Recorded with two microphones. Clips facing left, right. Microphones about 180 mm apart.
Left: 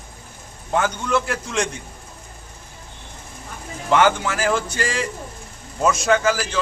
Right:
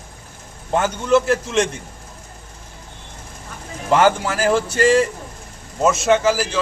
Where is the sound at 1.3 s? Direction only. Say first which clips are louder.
Right 6 dB; 25° right (ahead or behind).